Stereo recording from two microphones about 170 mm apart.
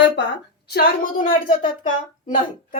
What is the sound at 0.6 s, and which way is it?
Speech, 65° left (ahead or behind).